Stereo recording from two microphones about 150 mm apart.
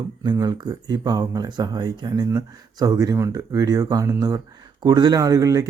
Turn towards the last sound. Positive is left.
turn(degrees=-25)  # may be behind; listen again after turning